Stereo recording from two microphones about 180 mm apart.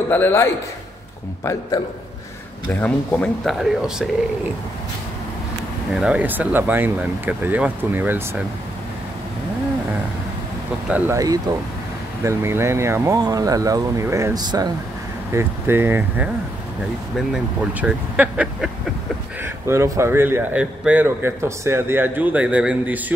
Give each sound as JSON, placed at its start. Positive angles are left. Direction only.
{"t": 0.1, "sound": "a man's voice", "side_deg": 10}
{"t": 5.9, "sound": "speech", "side_deg": -5}
{"t": 10.9, "sound": "speech", "side_deg": -10}
{"t": 17.3, "sound": "speech", "side_deg": -5}